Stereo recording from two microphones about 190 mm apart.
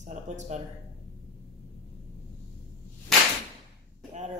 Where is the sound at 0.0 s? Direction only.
40° right (ahead or behind).